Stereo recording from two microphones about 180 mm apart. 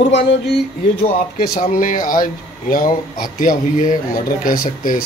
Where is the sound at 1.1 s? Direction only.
55° left (ahead or behind).